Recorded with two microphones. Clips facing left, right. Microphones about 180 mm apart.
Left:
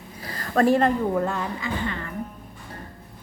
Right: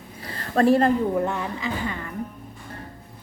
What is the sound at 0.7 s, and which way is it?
Speech, 35° right (ahead or behind).